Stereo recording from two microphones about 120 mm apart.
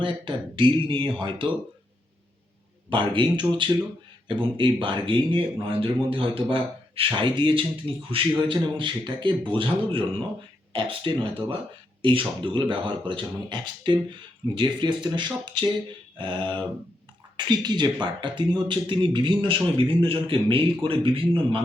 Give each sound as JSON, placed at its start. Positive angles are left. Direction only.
{"t": 0.0, "sound": "a man's voice", "side_deg": -45}
{"t": 2.9, "sound": "a man's voice", "side_deg": -40}